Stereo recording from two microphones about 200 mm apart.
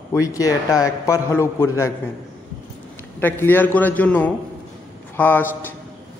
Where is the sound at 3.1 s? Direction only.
10° left (ahead or behind).